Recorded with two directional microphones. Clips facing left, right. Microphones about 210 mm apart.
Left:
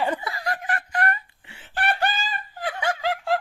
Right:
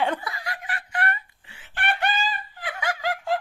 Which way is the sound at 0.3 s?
40° left (ahead or behind).